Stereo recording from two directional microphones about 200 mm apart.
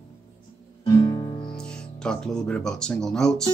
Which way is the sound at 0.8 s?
20° left (ahead or behind).